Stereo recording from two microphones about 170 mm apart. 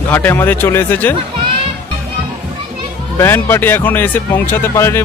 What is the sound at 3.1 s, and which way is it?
Speech, 15° left (ahead or behind).